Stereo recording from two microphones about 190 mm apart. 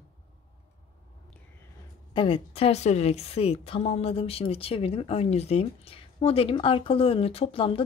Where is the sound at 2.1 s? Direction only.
30° left (ahead or behind).